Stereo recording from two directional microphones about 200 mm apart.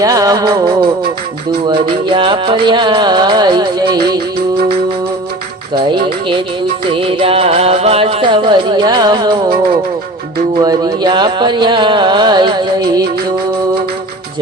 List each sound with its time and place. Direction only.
0.0 s music: 15° right (ahead or behind)
5.7 s music: 25° right (ahead or behind)